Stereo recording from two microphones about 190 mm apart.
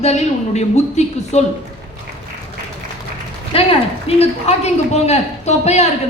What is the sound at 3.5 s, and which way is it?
A man's voice, 30° left (ahead or behind).